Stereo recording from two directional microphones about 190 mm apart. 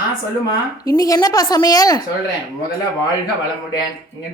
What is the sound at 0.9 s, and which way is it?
A woman's voice, 20° left (ahead or behind).